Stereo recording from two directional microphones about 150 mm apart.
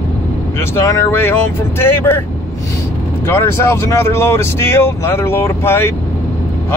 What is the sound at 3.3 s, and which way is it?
Speech, 15° left (ahead or behind).